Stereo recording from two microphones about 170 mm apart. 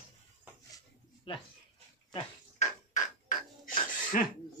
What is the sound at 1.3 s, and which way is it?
Speech, 30° left (ahead or behind).